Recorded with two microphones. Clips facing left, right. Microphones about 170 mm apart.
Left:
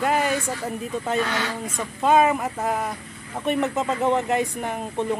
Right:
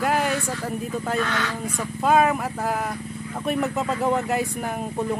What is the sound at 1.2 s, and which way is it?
Speech, 15° left (ahead or behind).